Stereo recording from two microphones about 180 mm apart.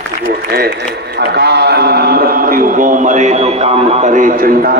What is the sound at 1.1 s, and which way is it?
A man's voice, 65° right (ahead or behind).